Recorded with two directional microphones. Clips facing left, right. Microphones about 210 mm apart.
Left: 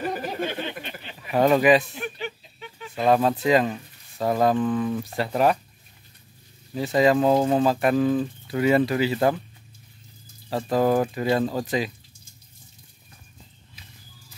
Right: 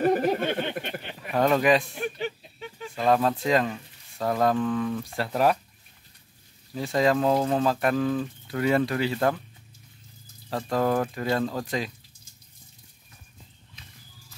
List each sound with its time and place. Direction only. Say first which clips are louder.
0.0 s a sound: right 6 dB; 55° right (ahead or behind)
1.3 s speech: left 3 dB; 5° left (ahead or behind)
2.2 s a sound: right 2 dB; 40° right (ahead or behind)
3.0 s speech: left 3 dB; 5° left (ahead or behind)
6.7 s speech: left 3 dB; 5° left (ahead or behind)
10.5 s speech: left 4 dB; 5° left (ahead or behind)